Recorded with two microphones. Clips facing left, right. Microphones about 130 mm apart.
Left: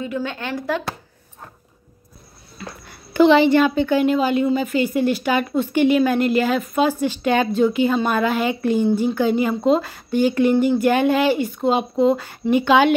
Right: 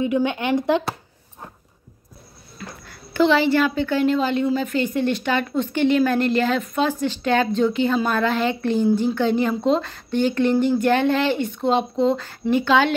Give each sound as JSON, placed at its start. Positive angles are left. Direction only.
{"t": 0.0, "sound": "speech", "side_deg": -20}
{"t": 2.9, "sound": "speech", "side_deg": 15}